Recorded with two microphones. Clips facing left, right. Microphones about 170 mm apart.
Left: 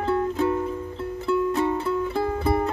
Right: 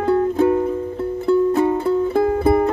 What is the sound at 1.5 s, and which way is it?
Music, 40° right (ahead or behind).